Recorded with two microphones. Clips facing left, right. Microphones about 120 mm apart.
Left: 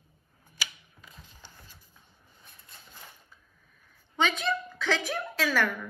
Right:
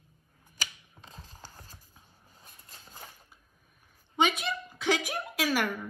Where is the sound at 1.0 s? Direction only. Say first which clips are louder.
Right 4 dB; 35° right (ahead or behind).